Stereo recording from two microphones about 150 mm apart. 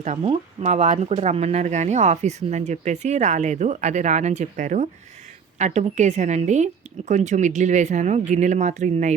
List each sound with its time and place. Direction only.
0.2 s speech: 40° right (ahead or behind)